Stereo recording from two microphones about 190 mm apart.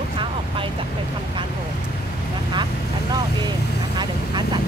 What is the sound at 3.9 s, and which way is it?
Vehicle, 25° right (ahead or behind).